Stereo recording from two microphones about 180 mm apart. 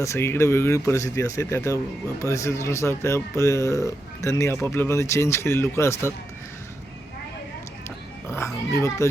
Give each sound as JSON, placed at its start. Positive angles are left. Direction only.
{"t": 0.0, "sound": "speech", "side_deg": 15}
{"t": 8.3, "sound": "oink", "side_deg": 15}